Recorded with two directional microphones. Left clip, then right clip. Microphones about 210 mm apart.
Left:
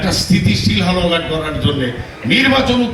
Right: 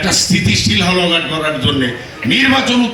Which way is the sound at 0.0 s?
55° left (ahead or behind).